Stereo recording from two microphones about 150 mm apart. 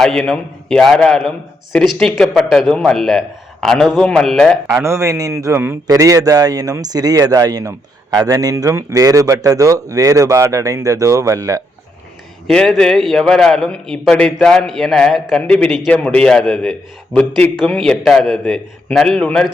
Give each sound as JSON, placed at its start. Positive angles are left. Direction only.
{"t": 0.0, "sound": "a man's voice", "side_deg": 5}
{"t": 4.8, "sound": "a man's voice", "side_deg": -20}
{"t": 12.5, "sound": "a man's voice", "side_deg": 5}